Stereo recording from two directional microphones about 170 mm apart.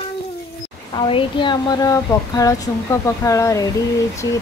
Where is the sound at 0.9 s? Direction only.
30° left (ahead or behind).